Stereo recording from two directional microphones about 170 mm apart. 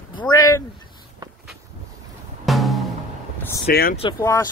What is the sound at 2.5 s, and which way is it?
Music, centre (ahead or behind).